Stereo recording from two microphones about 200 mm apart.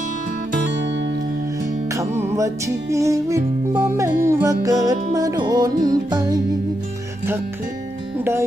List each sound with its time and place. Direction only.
1.9 s music: 15° right (ahead or behind)
8.2 s music: 10° right (ahead or behind)